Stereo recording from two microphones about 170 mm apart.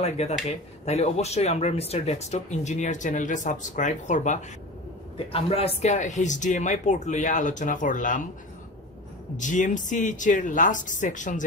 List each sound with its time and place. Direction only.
0.0 s speech: 40° left (ahead or behind)
5.1 s speech: 35° left (ahead or behind)
9.4 s speech: 50° left (ahead or behind)